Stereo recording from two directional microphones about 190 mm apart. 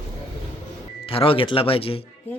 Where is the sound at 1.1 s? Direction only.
30° left (ahead or behind).